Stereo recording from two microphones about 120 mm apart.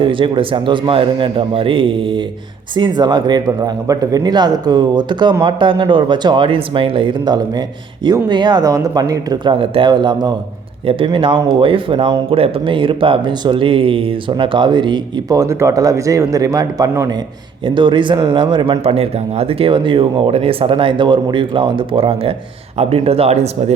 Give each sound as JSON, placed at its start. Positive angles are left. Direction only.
{"t": 0.0, "sound": "a man's voice", "side_deg": -45}
{"t": 17.7, "sound": "speech", "side_deg": -45}